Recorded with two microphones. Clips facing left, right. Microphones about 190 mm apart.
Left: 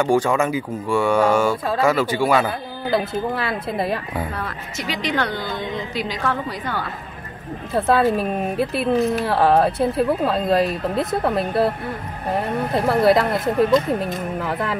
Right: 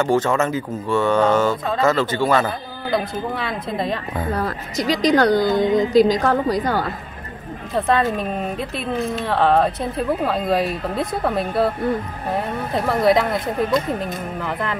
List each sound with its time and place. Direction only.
0.0 s speech: 15° left (ahead or behind)
4.3 s a woman's voice: 40° right (ahead or behind)
7.7 s speech: 5° left (ahead or behind)
12.7 s speech: centre (ahead or behind)